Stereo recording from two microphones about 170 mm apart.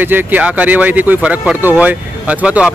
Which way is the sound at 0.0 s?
10° right (ahead or behind).